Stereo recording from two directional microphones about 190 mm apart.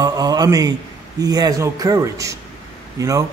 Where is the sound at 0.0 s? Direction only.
20° right (ahead or behind).